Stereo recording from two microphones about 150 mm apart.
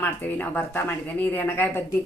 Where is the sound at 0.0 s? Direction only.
10° left (ahead or behind).